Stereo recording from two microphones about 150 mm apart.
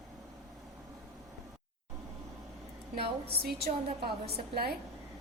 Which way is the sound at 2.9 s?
90° right.